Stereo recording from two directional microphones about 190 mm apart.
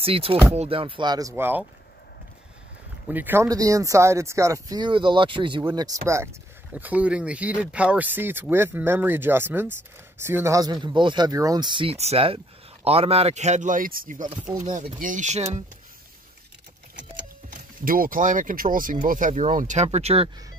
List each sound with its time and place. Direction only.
0.0 s speech: 30° right (ahead or behind); by 1.7 s 10° right (ahead or behind)
3.1 s speech: 10° right (ahead or behind); by 5.6 s 25° right (ahead or behind)
5.6 s speech: 15° right (ahead or behind); by 15.4 s 40° right (ahead or behind)
17.5 s speech: 50° right (ahead or behind); by 20.2 s 35° right (ahead or behind)